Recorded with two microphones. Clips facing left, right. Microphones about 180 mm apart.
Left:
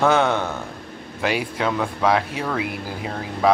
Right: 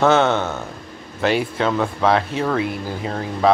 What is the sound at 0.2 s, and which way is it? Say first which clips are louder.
Speech: right 2 dB; 20° right (ahead or behind).